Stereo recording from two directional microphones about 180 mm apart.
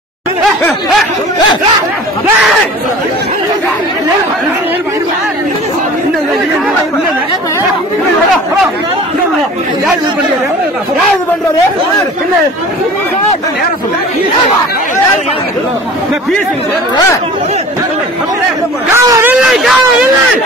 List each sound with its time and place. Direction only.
0.4 s laughter: centre (ahead or behind)
18.9 s speech: 15° right (ahead or behind)
19.3 s speech: centre (ahead or behind)